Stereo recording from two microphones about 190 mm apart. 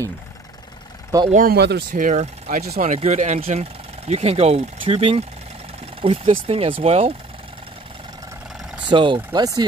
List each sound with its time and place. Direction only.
1.3 s speech: 50° right (ahead or behind)
1.9 s speech: 45° right (ahead or behind)
8.8 s speech: 25° right (ahead or behind)